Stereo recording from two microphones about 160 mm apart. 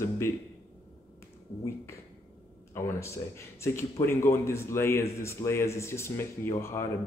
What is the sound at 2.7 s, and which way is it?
Speech, 15° left (ahead or behind).